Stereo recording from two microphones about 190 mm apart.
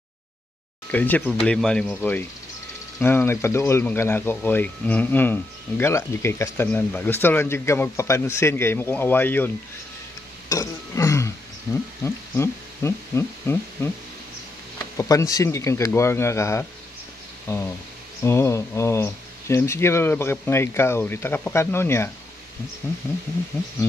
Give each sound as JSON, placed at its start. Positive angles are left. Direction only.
{"t": 0.9, "sound": "speech", "side_deg": 10}
{"t": 3.0, "sound": "speech", "side_deg": 10}
{"t": 10.5, "sound": "burping", "side_deg": 15}
{"t": 11.7, "sound": "speech", "side_deg": 15}
{"t": 12.0, "sound": "a sound", "side_deg": 15}
{"t": 13.8, "sound": "speech", "side_deg": 10}
{"t": 15.0, "sound": "speech", "side_deg": 15}